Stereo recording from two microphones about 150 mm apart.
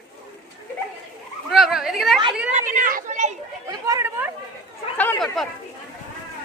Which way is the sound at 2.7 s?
60° right (ahead or behind).